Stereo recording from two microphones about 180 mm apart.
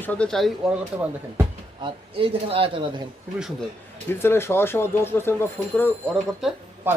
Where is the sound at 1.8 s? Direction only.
30° right (ahead or behind).